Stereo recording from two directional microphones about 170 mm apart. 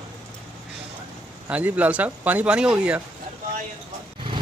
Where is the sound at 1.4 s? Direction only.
10° right (ahead or behind).